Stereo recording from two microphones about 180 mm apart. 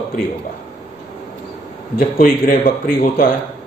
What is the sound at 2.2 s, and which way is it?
A man's voice, 50° left (ahead or behind).